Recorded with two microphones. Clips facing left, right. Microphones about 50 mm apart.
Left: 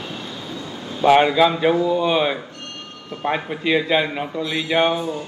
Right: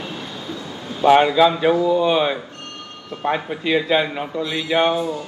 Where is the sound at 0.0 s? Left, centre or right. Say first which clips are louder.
Right 1 dB; centre.